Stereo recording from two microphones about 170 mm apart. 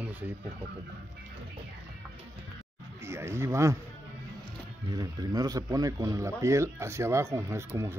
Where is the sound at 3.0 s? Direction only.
15° right (ahead or behind).